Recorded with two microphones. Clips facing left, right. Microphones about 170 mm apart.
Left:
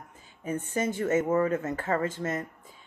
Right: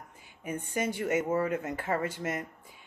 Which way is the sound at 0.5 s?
25° left (ahead or behind).